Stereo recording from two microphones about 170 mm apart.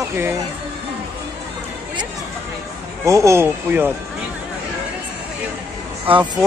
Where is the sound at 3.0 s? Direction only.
15° right (ahead or behind).